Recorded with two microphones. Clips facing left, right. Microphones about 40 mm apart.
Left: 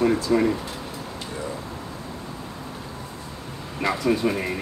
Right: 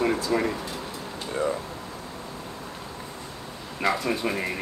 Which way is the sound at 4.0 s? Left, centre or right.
Centre.